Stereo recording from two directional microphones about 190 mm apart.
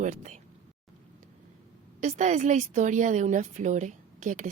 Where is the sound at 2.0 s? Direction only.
40° right (ahead or behind).